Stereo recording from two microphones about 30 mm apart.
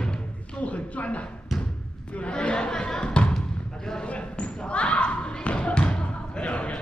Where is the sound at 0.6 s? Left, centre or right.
Left.